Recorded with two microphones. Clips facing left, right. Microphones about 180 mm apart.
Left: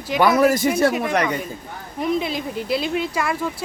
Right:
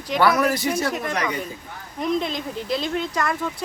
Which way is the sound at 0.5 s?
55° left (ahead or behind).